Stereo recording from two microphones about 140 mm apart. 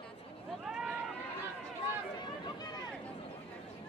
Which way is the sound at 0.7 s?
5° right (ahead or behind).